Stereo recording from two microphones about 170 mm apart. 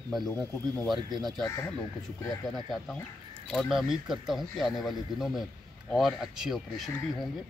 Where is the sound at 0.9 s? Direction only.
25° right (ahead or behind).